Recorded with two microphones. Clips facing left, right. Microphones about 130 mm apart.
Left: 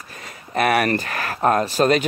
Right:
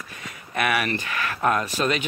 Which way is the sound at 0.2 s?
40° left (ahead or behind).